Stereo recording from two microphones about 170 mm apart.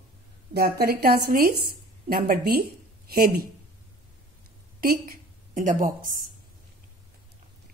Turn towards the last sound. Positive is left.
turn(degrees=-50)  # may be behind; listen again after turning